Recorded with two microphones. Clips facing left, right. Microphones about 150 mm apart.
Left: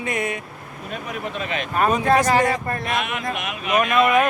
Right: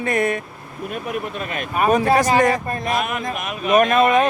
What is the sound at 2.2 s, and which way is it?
Speech, 15° right (ahead or behind).